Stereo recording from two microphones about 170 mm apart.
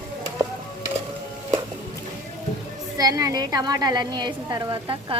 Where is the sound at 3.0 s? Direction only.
20° right (ahead or behind).